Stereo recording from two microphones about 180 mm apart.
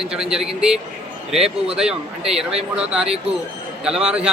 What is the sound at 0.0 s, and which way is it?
A man's voice, 5° right (ahead or behind).